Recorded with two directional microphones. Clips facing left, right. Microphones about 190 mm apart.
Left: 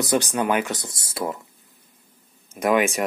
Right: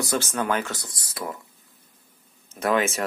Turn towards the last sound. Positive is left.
turn(degrees=15)  # may be behind; listen again after turning